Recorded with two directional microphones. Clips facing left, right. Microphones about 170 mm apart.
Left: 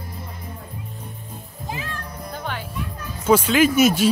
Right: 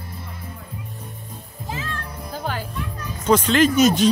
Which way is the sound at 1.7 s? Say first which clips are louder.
Right 1 dB; 15° left (ahead or behind).